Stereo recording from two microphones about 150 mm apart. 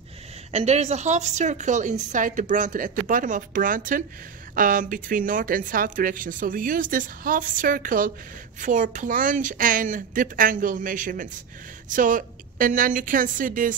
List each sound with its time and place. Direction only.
0.5 s speech: 45° right (ahead or behind); by 13.7 s 65° right (ahead or behind)